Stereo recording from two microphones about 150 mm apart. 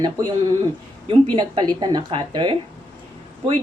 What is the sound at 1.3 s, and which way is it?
Speech, 30° right (ahead or behind).